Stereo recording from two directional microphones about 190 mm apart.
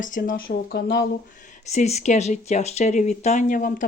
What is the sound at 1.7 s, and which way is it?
Speech, 35° left (ahead or behind).